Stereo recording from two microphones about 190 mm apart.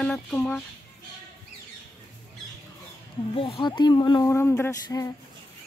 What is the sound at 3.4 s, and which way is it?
A woman's voice, 25° left (ahead or behind).